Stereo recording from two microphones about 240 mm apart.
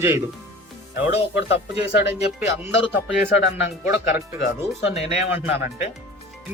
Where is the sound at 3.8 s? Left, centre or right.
Centre.